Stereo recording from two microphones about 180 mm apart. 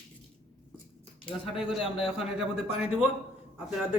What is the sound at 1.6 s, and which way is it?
Speech, 5° right (ahead or behind).